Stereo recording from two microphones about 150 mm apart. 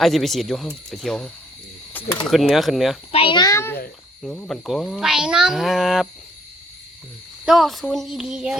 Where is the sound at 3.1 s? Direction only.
35° left (ahead or behind); by 3.8 s 15° left (ahead or behind).